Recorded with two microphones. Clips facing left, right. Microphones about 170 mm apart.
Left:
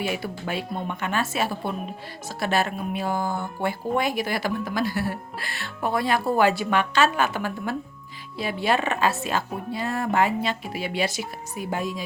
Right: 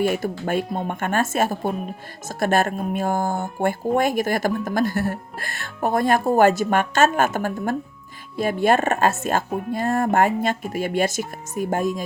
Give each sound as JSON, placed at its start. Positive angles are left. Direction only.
{"t": 0.0, "sound": "speech", "side_deg": -50}